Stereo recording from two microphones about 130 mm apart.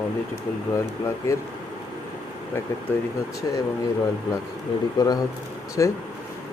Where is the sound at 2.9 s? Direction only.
15° left (ahead or behind).